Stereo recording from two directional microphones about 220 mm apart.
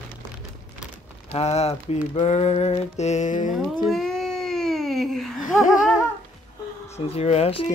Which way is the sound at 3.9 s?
Centre (ahead or behind).